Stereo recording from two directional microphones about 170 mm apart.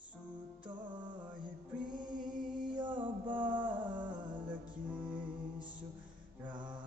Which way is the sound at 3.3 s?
30° right (ahead or behind).